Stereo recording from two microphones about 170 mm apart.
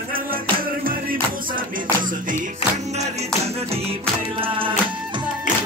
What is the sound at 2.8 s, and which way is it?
Music, 40° right (ahead or behind).